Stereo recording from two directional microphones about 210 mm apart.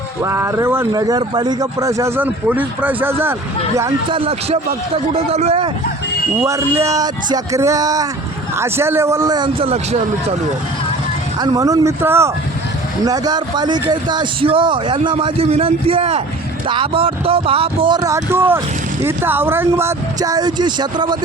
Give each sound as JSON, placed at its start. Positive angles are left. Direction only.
{"t": 0.2, "sound": "speech", "side_deg": -10}
{"t": 4.2, "sound": "a man's voice", "side_deg": -30}
{"t": 6.4, "sound": "speech", "side_deg": -15}
{"t": 11.3, "sound": "a man's voice", "side_deg": -20}